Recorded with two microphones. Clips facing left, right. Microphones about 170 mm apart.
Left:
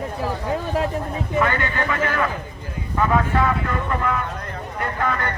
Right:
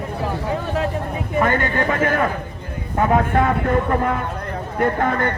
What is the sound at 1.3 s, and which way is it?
A man's voice, 50° right (ahead or behind).